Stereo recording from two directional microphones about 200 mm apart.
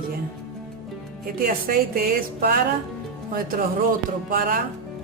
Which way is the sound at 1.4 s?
45° right (ahead or behind).